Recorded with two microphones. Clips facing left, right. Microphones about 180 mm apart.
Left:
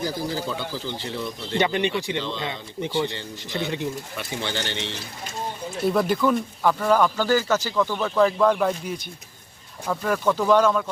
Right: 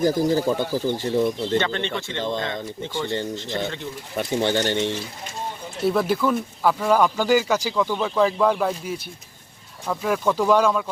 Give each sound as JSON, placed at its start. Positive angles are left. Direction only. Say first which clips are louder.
{"t": 0.0, "sound": "speech", "louder": "right 8 dB", "side_deg": -45}
{"t": 1.5, "sound": "speech", "louder": "left 1 dB", "side_deg": 15}
{"t": 4.2, "sound": "speech", "louder": "right 10 dB", "side_deg": -50}
{"t": 5.8, "sound": "speech", "louder": "even", "side_deg": 0}